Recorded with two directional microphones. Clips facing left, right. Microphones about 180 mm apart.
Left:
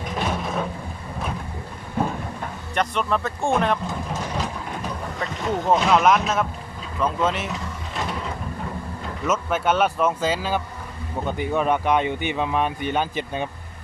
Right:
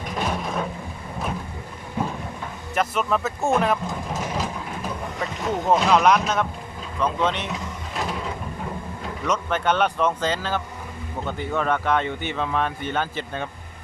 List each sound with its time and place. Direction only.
0.0 s a sound: centre (ahead or behind)
2.7 s speech: 5° right (ahead or behind)
7.0 s vehicle: 5° left (ahead or behind)
9.2 s speech: 5° left (ahead or behind)